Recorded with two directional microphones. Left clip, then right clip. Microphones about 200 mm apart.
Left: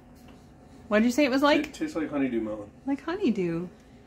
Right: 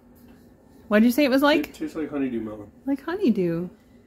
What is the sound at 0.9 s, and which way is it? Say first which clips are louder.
Speech: right 4 dB; 25° right (ahead or behind).